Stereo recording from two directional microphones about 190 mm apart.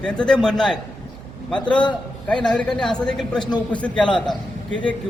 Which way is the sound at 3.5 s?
5° left (ahead or behind).